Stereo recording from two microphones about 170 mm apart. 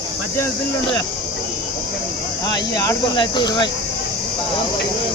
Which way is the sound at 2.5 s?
20° left (ahead or behind).